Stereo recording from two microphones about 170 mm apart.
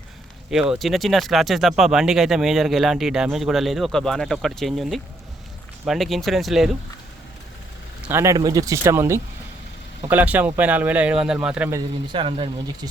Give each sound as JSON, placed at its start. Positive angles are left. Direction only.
{"t": 0.5, "sound": "speech", "side_deg": -5}
{"t": 8.0, "sound": "speech", "side_deg": -15}
{"t": 12.1, "sound": "speech", "side_deg": -30}